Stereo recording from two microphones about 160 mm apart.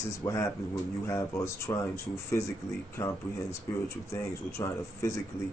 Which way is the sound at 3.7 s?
15° left (ahead or behind).